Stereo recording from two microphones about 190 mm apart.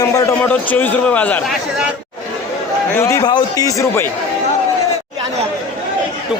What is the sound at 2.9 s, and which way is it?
A man's voice, 15° left (ahead or behind).